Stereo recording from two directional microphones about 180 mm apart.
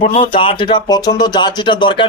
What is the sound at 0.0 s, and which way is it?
Speech, 30° left (ahead or behind).